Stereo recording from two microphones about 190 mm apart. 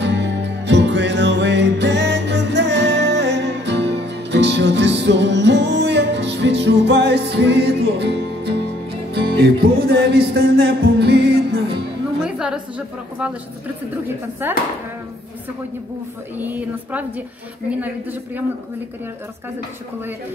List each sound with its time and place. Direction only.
0.0 s music: 65° right (ahead or behind)
12.4 s a woman's voice: 5° right (ahead or behind)
14.4 s a woman's voice: 10° right (ahead or behind)
16.3 s a woman's voice: 10° right (ahead or behind)